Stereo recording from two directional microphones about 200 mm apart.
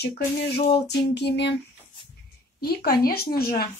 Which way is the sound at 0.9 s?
60° left (ahead or behind).